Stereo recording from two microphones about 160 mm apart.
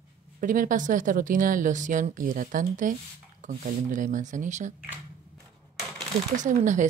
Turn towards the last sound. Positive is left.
turn(degrees=-50)  # may be behind; listen again after turning